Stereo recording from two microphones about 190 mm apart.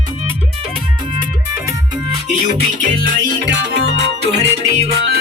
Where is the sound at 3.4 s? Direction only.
65° right (ahead or behind).